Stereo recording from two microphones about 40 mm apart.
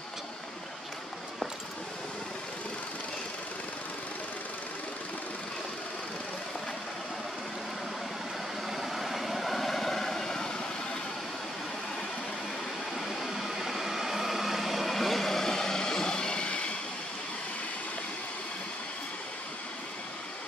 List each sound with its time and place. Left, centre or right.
8.6 s vehicle: centre
12.9 s vehicle: centre; by 16.7 s left